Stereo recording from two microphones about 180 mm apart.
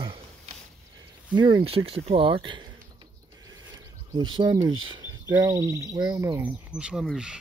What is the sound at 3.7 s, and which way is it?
Speech, 25° right (ahead or behind).